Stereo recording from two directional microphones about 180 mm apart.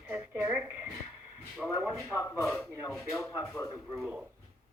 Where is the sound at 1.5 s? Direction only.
5° right (ahead or behind).